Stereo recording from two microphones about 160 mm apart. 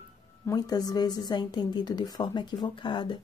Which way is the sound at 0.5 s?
25° left (ahead or behind).